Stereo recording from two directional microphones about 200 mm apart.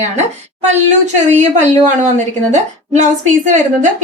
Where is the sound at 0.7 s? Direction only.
35° right (ahead or behind).